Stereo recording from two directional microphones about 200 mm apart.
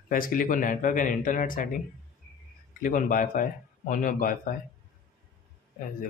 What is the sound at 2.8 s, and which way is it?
Speech, 40° left (ahead or behind).